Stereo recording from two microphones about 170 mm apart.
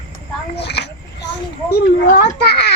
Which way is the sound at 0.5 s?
75° left (ahead or behind).